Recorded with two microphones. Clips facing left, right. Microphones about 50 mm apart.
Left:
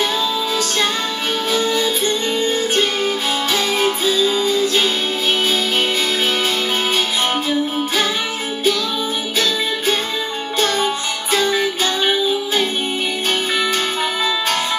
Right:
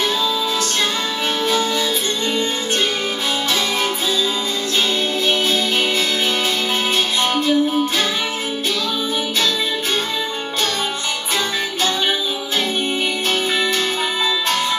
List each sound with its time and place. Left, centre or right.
3.8 s music: centre
7.3 s music: centre
11.8 s music: centre